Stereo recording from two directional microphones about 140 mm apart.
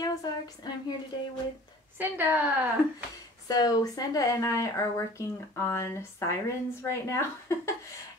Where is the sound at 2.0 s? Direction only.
15° right (ahead or behind).